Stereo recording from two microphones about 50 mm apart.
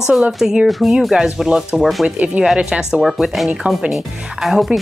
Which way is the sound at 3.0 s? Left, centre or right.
Centre.